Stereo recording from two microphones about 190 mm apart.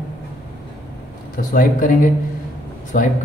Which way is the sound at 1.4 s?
45° left (ahead or behind).